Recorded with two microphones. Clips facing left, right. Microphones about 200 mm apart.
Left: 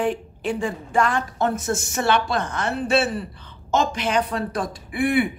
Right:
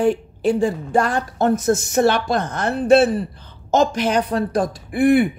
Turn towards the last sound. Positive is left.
turn(degrees=-40)  # may be behind; listen again after turning